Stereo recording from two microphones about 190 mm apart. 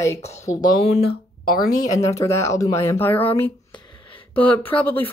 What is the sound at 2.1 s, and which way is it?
Speech, 15° left (ahead or behind).